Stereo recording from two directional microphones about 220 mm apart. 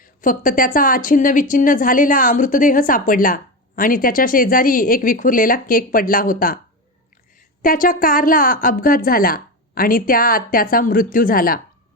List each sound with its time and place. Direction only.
0.0 s a woman's voice: 40° left (ahead or behind)
7.6 s a woman's voice: 40° left (ahead or behind)